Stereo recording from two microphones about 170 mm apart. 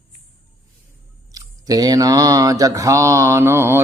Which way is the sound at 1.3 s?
20° right (ahead or behind).